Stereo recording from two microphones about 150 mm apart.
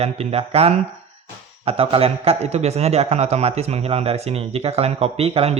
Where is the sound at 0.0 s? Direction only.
45° right (ahead or behind).